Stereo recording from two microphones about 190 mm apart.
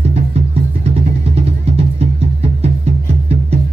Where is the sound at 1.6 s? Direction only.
30° right (ahead or behind).